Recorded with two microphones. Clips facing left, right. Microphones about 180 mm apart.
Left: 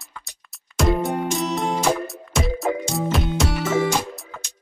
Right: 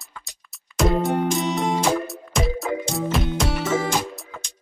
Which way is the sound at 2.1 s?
Centre (ahead or behind).